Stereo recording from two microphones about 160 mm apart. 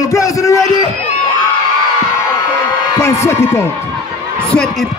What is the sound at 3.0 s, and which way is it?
Speech, 15° left (ahead or behind).